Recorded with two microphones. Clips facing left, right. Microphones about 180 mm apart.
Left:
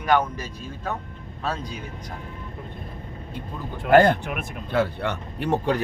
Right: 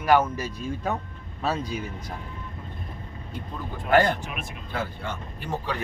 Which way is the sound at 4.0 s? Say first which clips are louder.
Left 5 dB; 55° left (ahead or behind).